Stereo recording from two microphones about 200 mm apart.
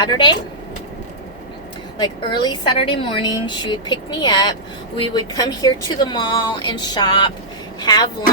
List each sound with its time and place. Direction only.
0.0 s a woman's voice: 20° left (ahead or behind)
2.0 s a woman's voice: 20° left (ahead or behind)